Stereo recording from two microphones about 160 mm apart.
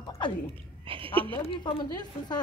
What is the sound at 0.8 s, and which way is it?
Speech, 35° right (ahead or behind).